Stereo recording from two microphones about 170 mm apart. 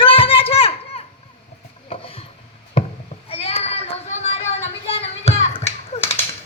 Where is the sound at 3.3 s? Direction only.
35° left (ahead or behind).